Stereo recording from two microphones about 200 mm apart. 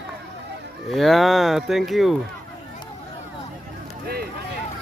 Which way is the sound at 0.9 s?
Centre (ahead or behind).